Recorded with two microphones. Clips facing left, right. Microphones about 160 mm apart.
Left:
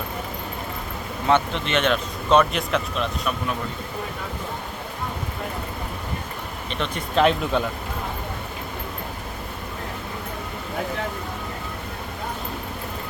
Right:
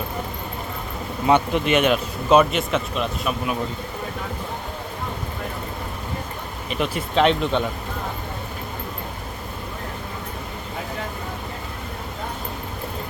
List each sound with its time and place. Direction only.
1.3 s speech: 10° right (ahead or behind)
6.7 s speech: 5° right (ahead or behind)